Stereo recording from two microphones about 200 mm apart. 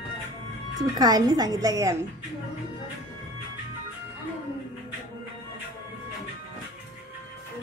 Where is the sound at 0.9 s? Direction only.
20° right (ahead or behind).